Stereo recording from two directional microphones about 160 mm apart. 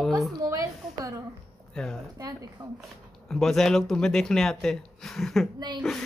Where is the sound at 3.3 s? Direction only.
Centre (ahead or behind).